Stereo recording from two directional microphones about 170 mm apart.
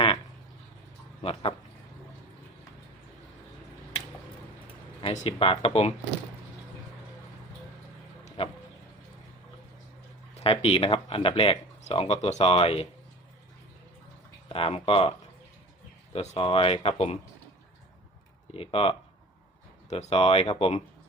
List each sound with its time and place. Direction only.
1.2 s speech: 35° left (ahead or behind)
5.1 s speech: 35° left (ahead or behind)
8.4 s a sound: 35° left (ahead or behind)
10.3 s speech: 35° left (ahead or behind)
14.5 s speech: 35° left (ahead or behind)
16.1 s speech: 35° left (ahead or behind)
18.5 s speech: 35° left (ahead or behind)